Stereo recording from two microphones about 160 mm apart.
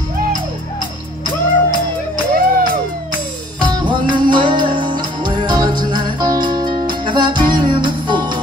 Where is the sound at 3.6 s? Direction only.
30° right (ahead or behind).